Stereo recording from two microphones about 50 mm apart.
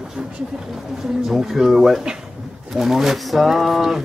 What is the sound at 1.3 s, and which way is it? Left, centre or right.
Speech, centre.